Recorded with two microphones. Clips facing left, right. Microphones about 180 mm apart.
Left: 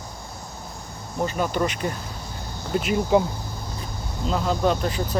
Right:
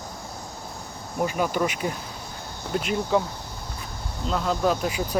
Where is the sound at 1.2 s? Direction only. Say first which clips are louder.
Even; 10° right (ahead or behind).